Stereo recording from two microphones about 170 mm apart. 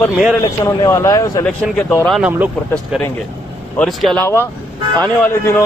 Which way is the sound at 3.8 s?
5° left (ahead or behind).